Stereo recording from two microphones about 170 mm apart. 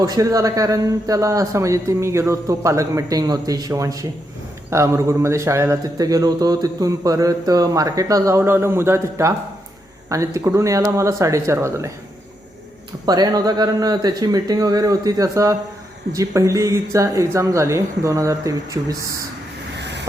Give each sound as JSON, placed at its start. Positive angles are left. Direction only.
{"t": 0.0, "sound": "a man's voice", "side_deg": -20}
{"t": 13.1, "sound": "a man's voice", "side_deg": -25}
{"t": 19.8, "sound": "vehicle", "side_deg": -90}